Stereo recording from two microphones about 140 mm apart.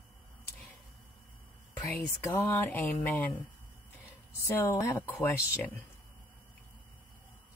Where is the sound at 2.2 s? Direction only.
15° left (ahead or behind).